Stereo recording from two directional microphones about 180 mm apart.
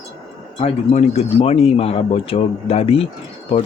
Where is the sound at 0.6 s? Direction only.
40° left (ahead or behind).